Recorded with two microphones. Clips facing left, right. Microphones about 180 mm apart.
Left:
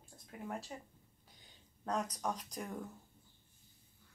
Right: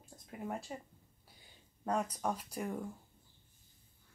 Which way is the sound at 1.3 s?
5° right (ahead or behind).